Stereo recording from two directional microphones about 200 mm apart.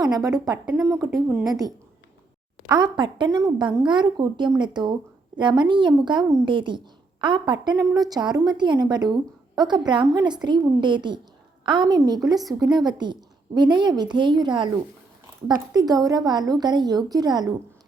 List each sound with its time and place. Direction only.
0.0 s speech: 20° right (ahead or behind)